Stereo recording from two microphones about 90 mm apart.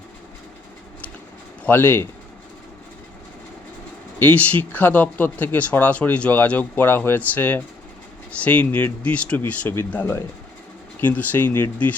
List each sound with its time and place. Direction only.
1.6 s speech: 20° left (ahead or behind)
4.2 s speech: 20° left (ahead or behind)